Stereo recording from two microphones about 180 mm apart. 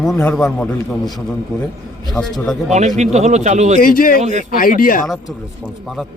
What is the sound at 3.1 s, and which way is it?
Speech, 40° right (ahead or behind).